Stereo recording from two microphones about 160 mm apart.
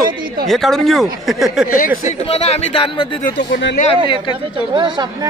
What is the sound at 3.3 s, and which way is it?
Speech, 75° left (ahead or behind).